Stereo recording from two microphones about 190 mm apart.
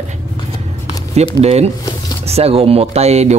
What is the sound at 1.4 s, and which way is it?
Speech, 35° right (ahead or behind).